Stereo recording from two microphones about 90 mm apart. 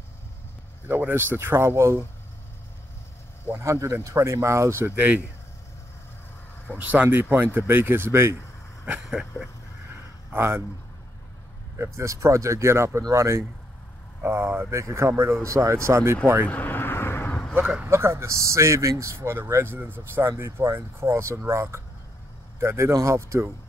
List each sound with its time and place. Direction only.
0.8 s speech: 25° right (ahead or behind)
3.4 s speech: 30° right (ahead or behind)
4.9 s speech: 15° right (ahead or behind)
6.8 s speech: 20° right (ahead or behind)
9.0 s dog: 5° right (ahead or behind)
10.3 s speech: 25° right (ahead or behind)
12.0 s speech: 35° right (ahead or behind)
16.4 s vehicle: 20° left (ahead or behind)
17.3 s vehicle: 10° left (ahead or behind)
17.8 s speech: 30° right (ahead or behind)